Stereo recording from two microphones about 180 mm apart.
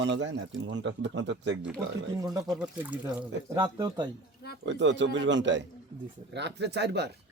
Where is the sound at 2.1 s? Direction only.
20° right (ahead or behind).